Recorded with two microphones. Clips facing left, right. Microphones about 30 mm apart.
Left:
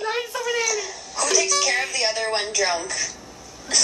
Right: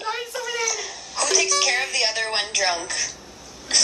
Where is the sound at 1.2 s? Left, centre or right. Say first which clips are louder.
Even; centre.